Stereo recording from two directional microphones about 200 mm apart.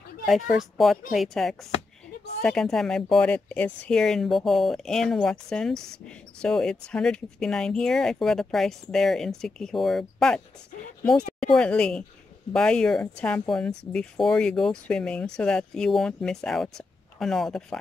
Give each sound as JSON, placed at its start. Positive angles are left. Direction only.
{"t": 0.2, "sound": "speech", "side_deg": 0}